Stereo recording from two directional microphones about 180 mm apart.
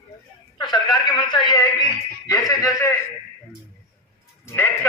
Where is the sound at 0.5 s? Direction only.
25° left (ahead or behind).